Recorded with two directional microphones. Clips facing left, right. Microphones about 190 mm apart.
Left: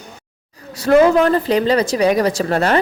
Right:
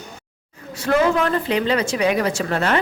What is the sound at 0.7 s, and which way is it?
A woman's voice, 40° left (ahead or behind).